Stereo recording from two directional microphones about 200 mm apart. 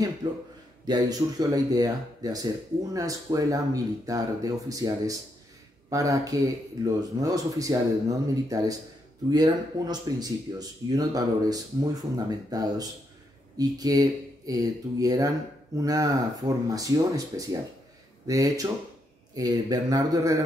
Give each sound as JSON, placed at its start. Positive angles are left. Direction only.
{"t": 0.2, "sound": "speech", "side_deg": -20}